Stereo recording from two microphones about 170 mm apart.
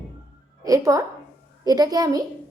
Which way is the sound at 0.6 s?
20° right (ahead or behind).